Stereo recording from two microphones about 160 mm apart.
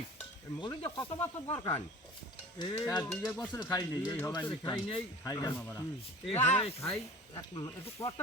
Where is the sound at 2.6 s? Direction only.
25° left (ahead or behind).